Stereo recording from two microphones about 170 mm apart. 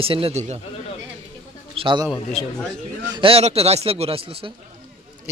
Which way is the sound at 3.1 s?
35° right (ahead or behind).